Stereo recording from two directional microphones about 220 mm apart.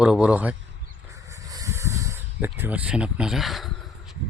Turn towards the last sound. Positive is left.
turn(degrees=0)  # may be behind; listen again after turning